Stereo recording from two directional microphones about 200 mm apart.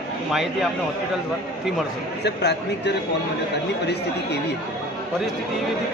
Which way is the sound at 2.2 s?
55° left (ahead or behind).